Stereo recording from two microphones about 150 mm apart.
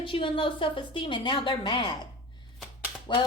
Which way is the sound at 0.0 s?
35° left (ahead or behind).